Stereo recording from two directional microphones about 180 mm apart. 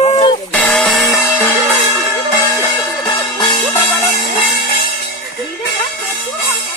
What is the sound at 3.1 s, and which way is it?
Music, 25° left (ahead or behind).